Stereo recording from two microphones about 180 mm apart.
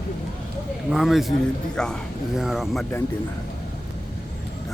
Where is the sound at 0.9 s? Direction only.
Centre (ahead or behind).